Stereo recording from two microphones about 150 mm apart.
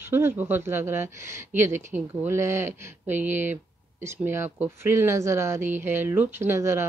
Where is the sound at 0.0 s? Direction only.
15° right (ahead or behind).